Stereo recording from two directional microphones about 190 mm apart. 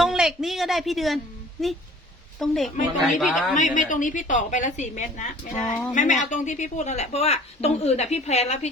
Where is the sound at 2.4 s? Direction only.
Centre (ahead or behind).